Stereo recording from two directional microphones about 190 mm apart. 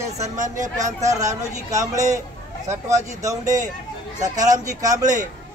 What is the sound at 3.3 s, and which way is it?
A man's voice, 15° right (ahead or behind).